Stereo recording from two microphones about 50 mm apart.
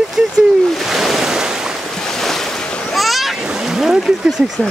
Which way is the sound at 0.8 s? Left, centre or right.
Centre.